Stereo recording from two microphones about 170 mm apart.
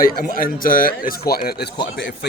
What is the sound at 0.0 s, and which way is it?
Speech, 55° left (ahead or behind).